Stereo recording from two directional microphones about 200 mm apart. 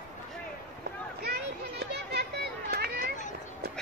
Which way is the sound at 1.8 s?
55° right (ahead or behind).